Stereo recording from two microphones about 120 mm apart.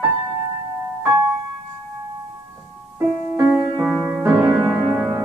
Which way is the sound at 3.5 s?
5° right (ahead or behind).